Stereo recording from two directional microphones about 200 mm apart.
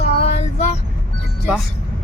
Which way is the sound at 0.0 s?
30° left (ahead or behind).